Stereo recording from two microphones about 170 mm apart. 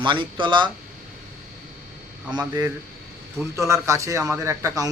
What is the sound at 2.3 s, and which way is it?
A man's voice, 20° right (ahead or behind).